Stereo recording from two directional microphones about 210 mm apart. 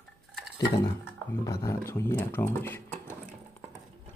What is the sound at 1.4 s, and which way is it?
Speech, 15° left (ahead or behind).